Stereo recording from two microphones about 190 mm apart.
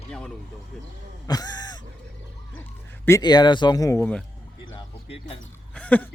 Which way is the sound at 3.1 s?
20° left (ahead or behind).